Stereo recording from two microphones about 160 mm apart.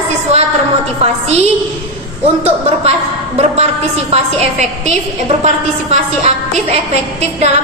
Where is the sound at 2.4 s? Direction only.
40° right (ahead or behind).